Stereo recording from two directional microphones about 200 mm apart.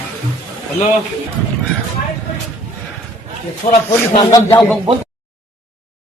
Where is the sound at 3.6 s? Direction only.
40° left (ahead or behind).